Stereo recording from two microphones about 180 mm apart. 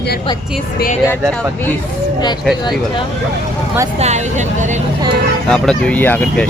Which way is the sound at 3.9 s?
40° right (ahead or behind).